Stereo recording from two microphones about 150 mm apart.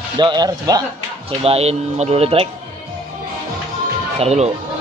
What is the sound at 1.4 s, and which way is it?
Speech, 40° right (ahead or behind).